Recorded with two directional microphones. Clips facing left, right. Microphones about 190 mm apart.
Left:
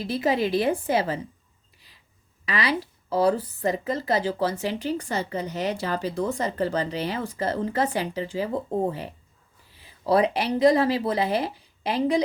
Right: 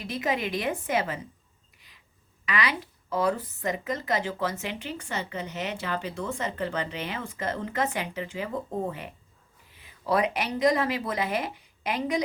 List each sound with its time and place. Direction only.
0.0 s speech: 35° left (ahead or behind)
2.5 s speech: 30° left (ahead or behind)